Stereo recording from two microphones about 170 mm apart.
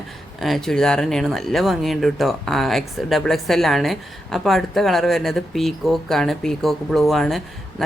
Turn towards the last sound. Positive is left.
turn(degrees=0)  # may be behind; listen again after turning